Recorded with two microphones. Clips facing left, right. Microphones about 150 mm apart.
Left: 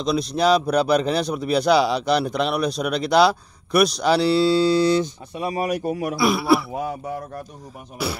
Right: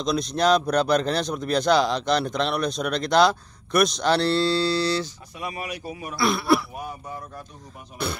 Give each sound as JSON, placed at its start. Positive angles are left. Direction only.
{"t": 0.0, "sound": "speech", "side_deg": 5}
{"t": 5.3, "sound": "speech", "side_deg": 35}
{"t": 6.1, "sound": "speech", "side_deg": 10}
{"t": 6.7, "sound": "speech", "side_deg": 90}
{"t": 8.0, "sound": "speech", "side_deg": 5}